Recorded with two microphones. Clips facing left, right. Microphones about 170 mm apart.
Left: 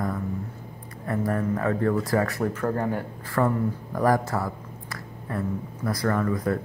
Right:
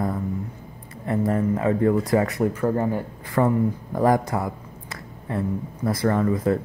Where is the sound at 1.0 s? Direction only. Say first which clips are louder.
Right 4 dB; 20° right (ahead or behind).